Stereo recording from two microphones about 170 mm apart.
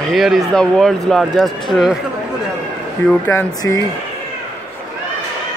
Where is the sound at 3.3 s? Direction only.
20° left (ahead or behind).